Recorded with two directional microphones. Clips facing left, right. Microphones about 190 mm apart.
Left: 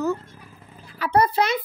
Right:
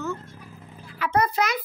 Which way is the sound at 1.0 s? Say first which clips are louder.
Left 3 dB; 35° left (ahead or behind).